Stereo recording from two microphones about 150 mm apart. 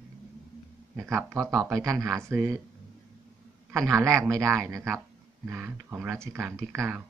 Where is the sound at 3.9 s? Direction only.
20° right (ahead or behind).